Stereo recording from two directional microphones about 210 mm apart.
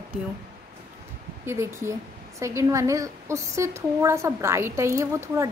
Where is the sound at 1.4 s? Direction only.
10° right (ahead or behind).